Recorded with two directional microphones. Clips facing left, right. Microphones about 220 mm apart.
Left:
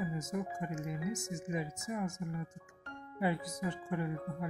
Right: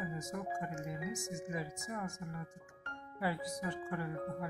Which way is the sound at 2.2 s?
20° left (ahead or behind).